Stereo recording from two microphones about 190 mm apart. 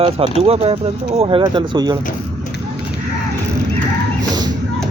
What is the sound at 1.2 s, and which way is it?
Speech, 25° right (ahead or behind).